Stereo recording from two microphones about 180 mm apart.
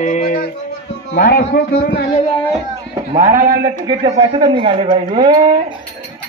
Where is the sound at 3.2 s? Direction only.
45° right (ahead or behind).